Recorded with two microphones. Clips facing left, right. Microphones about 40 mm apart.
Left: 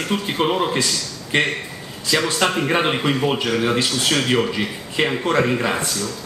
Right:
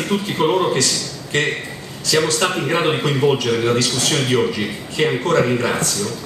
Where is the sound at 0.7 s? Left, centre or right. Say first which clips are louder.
Right 2 dB; left.